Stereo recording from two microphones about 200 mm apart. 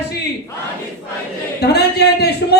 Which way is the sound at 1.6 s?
55° left (ahead or behind).